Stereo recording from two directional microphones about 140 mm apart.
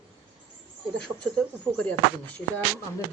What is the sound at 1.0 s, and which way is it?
Speech, 5° left (ahead or behind).